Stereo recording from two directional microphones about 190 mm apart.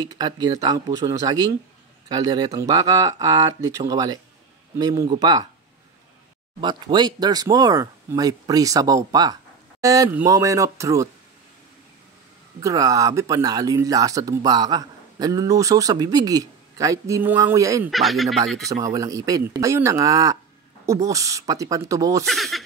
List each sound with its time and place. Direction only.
0.2 s speech: 20° right (ahead or behind)
6.6 s speech: 25° right (ahead or behind)
12.5 s speech: 20° right (ahead or behind)
17.9 s speech: centre (ahead or behind)
18.7 s speech: 15° right (ahead or behind)
22.2 s speech: centre (ahead or behind)